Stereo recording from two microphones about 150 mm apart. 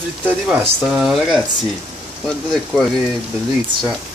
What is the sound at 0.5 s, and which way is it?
Speech, centre (ahead or behind).